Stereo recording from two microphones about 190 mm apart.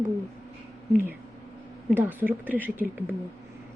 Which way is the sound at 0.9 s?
10° right (ahead or behind).